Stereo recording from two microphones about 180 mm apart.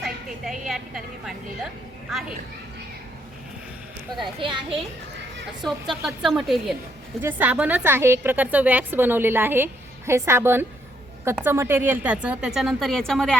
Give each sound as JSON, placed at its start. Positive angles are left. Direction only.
{"t": 0.0, "sound": "a woman's voice", "side_deg": 0}
{"t": 4.4, "sound": "speech", "side_deg": -25}
{"t": 5.6, "sound": "a woman's voice", "side_deg": 0}
{"t": 7.2, "sound": "a woman's voice", "side_deg": -10}